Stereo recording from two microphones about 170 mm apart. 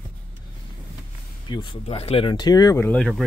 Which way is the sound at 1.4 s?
25° left (ahead or behind).